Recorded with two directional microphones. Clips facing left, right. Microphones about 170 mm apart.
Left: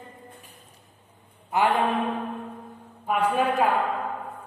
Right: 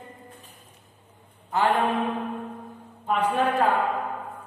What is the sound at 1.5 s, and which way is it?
Speech, 15° left (ahead or behind).